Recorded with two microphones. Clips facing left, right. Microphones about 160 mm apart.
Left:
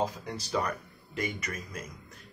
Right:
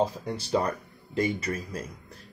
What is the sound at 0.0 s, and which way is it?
Speech, 30° right (ahead or behind).